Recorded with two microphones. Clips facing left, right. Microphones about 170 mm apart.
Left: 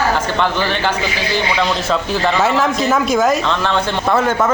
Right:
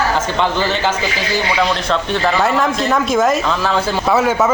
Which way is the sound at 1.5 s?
Centre (ahead or behind).